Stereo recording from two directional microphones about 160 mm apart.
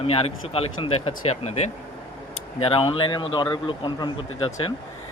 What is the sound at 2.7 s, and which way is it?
Speech, 35° left (ahead or behind).